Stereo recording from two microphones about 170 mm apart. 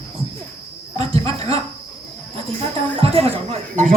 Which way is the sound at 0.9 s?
35° right (ahead or behind).